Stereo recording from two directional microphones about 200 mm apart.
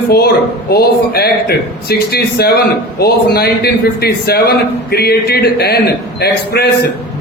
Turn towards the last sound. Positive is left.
turn(degrees=50)  # may be behind; listen again after turning